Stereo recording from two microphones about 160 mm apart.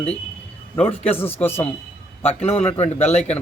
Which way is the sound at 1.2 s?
15° left (ahead or behind).